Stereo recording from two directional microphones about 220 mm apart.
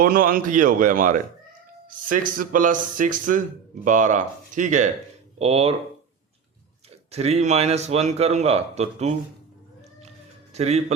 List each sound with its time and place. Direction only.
0.0 s a man's voice: 40° right (ahead or behind)
7.1 s a man's voice: 30° right (ahead or behind)
10.5 s a man's voice: 30° right (ahead or behind)